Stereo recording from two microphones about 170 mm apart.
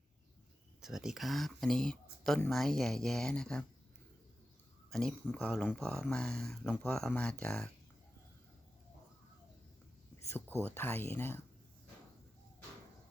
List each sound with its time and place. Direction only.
0.8 s speech: 5° right (ahead or behind)
4.9 s speech: 5° left (ahead or behind)
10.2 s a sound: 15° left (ahead or behind)
10.8 s speech: 15° left (ahead or behind)